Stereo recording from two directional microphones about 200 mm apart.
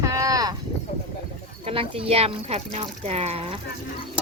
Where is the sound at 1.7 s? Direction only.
30° right (ahead or behind).